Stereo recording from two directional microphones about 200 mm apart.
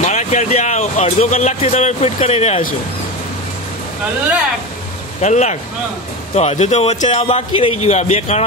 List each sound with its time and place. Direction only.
0.0 s speech: 35° left (ahead or behind)
5.2 s speech: 35° left (ahead or behind)